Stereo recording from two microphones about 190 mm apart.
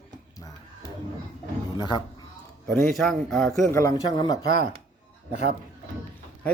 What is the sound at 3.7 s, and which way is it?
Speech, 15° left (ahead or behind).